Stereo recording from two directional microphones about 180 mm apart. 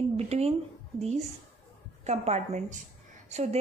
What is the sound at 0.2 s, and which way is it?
Speech, 35° right (ahead or behind).